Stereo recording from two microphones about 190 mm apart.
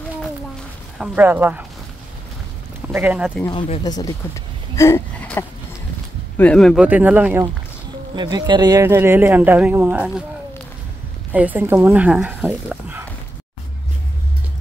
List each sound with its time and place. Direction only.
0.9 s speech: 5° right (ahead or behind)
2.9 s speech: 10° right (ahead or behind)
3.4 s speech: 30° left (ahead or behind)
4.7 s wheeze: 15° left (ahead or behind)
6.3 s speech: 5° left (ahead or behind)
8.1 s speech: 20° right (ahead or behind); by 10.2 s 5° right (ahead or behind)
11.3 s speech: 10° right (ahead or behind)